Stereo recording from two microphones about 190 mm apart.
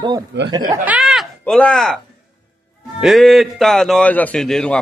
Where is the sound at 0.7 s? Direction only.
10° right (ahead or behind).